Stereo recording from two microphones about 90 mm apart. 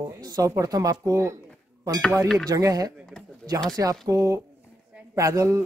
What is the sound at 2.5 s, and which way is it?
Speech, 40° right (ahead or behind).